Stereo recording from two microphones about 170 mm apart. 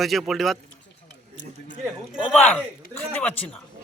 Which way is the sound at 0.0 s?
Centre (ahead or behind).